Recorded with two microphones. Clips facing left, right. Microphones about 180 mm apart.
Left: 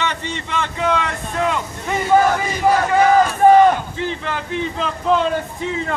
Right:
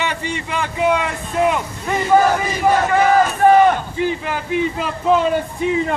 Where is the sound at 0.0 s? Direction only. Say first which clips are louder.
Right 1 dB; 10° right (ahead or behind).